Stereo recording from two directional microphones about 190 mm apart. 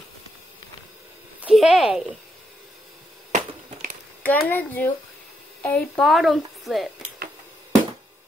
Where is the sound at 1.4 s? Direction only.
Centre (ahead or behind).